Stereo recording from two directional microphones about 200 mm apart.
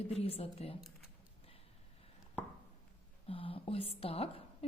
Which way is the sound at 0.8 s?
Centre (ahead or behind).